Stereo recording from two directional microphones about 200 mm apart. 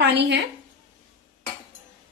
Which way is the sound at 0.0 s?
55° right (ahead or behind).